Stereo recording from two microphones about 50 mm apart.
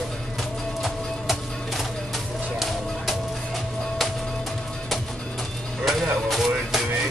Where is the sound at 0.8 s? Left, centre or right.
Centre.